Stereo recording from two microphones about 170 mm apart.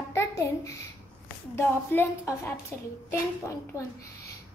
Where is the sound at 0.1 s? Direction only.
15° left (ahead or behind).